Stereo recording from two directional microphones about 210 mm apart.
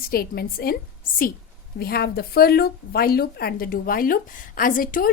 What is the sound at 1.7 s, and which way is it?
A woman's voice, 45° left (ahead or behind).